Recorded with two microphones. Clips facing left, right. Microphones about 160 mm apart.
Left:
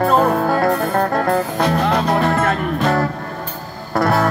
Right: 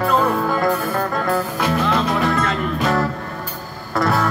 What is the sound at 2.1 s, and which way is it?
Music, 50° left (ahead or behind).